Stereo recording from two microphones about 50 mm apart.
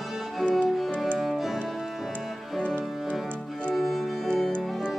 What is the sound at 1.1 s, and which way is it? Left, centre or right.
Music, centre.